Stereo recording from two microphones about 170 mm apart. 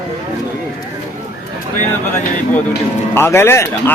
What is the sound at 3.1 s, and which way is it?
Speech, 15° left (ahead or behind).